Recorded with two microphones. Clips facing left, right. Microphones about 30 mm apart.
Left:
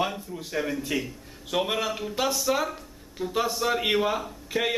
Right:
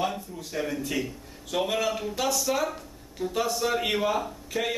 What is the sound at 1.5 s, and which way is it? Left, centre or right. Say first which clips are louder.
A man's voice: even; centre.